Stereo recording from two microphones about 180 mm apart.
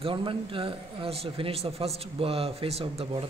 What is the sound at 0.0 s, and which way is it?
Speech, 30° right (ahead or behind).